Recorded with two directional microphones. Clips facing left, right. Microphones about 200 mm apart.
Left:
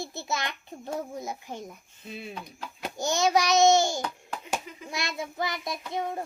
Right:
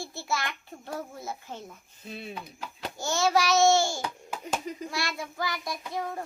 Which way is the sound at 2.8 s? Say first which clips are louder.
Left 2 dB; 15° left (ahead or behind).